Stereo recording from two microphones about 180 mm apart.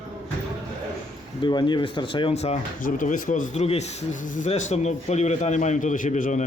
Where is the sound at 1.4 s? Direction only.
25° left (ahead or behind).